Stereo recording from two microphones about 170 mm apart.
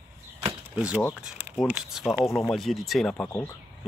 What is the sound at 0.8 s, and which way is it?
Speech, 5° right (ahead or behind).